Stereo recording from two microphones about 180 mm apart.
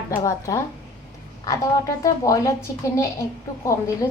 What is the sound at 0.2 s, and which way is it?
Speech, 15° left (ahead or behind).